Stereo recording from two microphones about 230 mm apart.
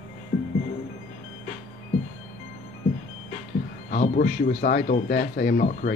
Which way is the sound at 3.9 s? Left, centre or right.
Left.